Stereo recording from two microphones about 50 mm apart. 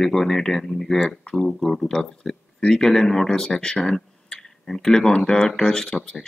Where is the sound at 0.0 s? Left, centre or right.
Centre.